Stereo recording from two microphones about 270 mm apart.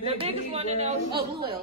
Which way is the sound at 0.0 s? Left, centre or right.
Right.